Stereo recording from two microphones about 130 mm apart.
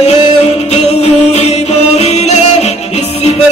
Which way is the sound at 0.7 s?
55° left (ahead or behind).